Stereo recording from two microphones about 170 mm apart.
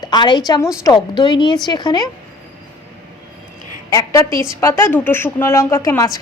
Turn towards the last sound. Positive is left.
turn(degrees=20)  # may be behind; listen again after turning